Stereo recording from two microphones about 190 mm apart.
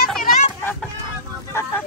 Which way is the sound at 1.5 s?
10° left (ahead or behind).